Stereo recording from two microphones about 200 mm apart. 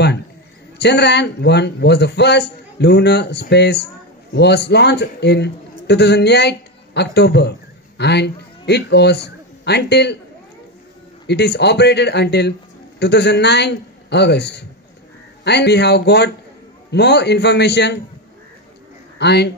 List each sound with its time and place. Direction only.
0.7 s a man's voice: 55° left (ahead or behind)
11.2 s a man's voice: 55° left (ahead or behind)
19.1 s speech: 55° left (ahead or behind)